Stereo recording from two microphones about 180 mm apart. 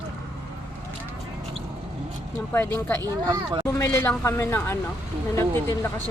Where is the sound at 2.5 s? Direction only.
10° left (ahead or behind).